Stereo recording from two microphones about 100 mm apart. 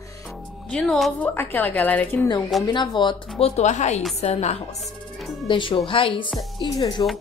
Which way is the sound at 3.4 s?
90° left.